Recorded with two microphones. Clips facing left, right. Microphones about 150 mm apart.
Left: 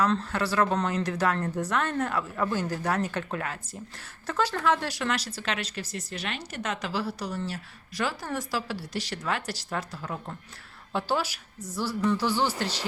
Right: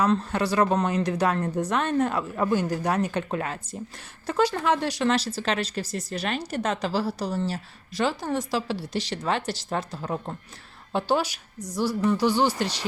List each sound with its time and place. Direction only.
0.0 s a woman's voice: 15° right (ahead or behind)